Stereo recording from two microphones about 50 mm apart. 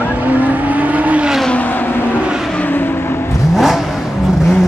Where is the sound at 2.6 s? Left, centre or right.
Left.